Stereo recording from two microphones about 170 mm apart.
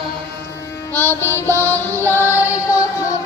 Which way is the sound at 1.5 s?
15° right (ahead or behind).